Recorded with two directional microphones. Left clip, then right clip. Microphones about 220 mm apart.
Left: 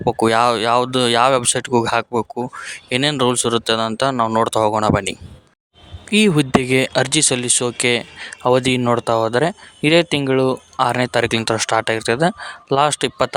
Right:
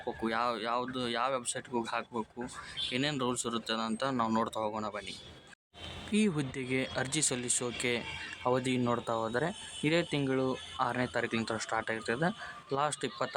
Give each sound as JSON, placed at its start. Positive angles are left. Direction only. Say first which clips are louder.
{"t": 0.0, "sound": "speech", "louder": "left 18 dB", "side_deg": 45}
{"t": 6.1, "sound": "speech", "louder": "left 18 dB", "side_deg": 40}